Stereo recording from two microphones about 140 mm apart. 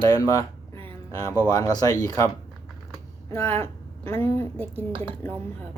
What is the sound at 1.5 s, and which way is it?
Speech, 25° left (ahead or behind).